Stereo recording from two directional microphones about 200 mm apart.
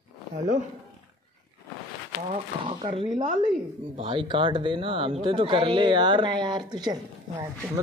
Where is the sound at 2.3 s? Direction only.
25° right (ahead or behind).